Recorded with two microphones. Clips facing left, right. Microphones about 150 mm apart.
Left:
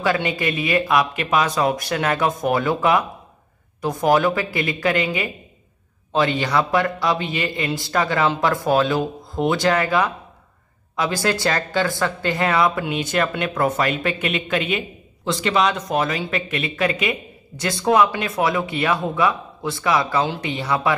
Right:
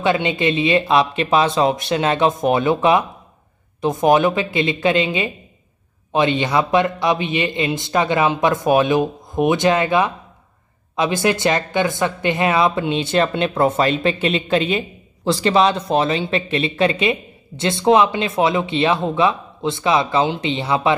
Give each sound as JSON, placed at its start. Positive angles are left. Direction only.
{"t": 0.0, "sound": "speech", "side_deg": -20}